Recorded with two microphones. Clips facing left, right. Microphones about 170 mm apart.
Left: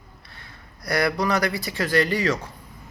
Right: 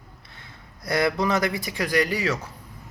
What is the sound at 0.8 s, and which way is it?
Speech, 20° right (ahead or behind).